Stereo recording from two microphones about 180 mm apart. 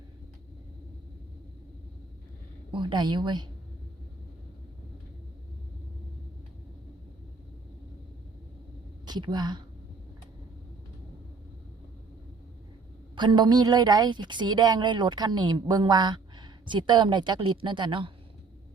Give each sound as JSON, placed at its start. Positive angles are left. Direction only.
{"t": 2.7, "sound": "a woman's voice", "side_deg": -25}
{"t": 9.0, "sound": "a woman's voice", "side_deg": -25}
{"t": 13.1, "sound": "a woman's voice", "side_deg": -25}